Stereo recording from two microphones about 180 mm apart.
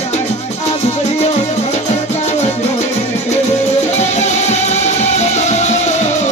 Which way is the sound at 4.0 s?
40° left (ahead or behind).